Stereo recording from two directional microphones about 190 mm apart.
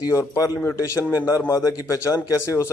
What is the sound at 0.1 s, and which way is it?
Speech, 15° left (ahead or behind).